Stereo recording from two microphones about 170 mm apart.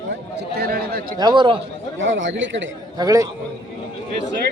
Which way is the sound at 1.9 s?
90° right.